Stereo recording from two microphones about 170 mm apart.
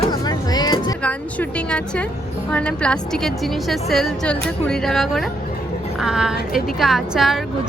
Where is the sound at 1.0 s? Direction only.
5° left (ahead or behind).